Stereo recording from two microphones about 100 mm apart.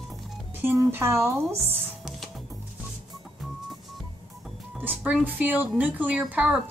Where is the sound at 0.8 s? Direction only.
25° right (ahead or behind).